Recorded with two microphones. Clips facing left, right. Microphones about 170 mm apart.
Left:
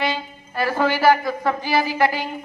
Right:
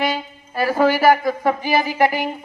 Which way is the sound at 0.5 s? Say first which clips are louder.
Right 4 dB; 10° right (ahead or behind).